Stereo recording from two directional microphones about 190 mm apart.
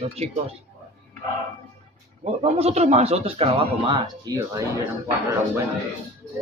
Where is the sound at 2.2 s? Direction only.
35° right (ahead or behind).